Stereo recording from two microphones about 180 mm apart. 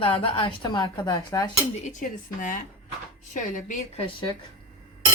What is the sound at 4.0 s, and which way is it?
Speech, 25° left (ahead or behind).